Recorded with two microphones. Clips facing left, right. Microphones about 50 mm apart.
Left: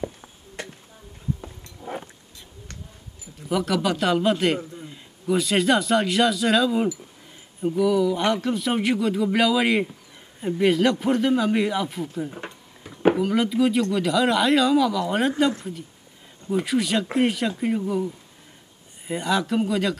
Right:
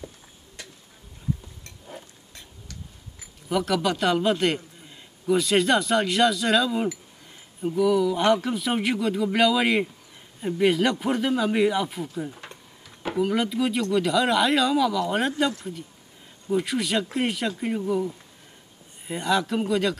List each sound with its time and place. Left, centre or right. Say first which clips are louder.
1.4 s insect: left 8 dB; left
3.4 s a man's voice: left 1 dB; centre
12.3 s a sound: left 4 dB; left
13.2 s a man's voice: left 3 dB; centre
16.5 s a man's voice: left 2 dB; centre